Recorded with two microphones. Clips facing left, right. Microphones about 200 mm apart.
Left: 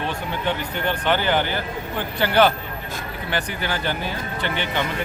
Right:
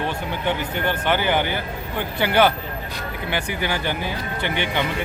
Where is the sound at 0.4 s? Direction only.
10° right (ahead or behind).